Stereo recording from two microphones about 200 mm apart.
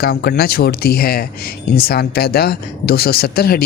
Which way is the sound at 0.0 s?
50° left (ahead or behind).